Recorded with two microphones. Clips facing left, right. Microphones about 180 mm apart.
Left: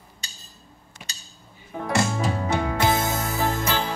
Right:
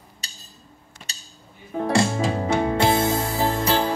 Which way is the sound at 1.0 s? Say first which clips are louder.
Even; 10° left (ahead or behind).